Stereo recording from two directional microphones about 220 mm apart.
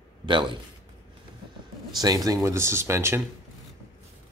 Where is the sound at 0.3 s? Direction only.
20° right (ahead or behind).